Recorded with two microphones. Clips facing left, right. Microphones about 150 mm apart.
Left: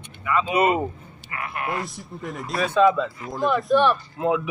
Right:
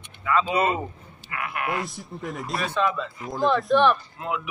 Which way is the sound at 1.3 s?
30° left (ahead or behind).